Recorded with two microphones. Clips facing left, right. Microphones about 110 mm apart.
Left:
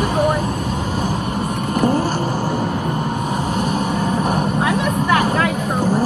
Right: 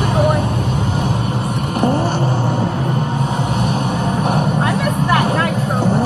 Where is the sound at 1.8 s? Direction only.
25° right (ahead or behind).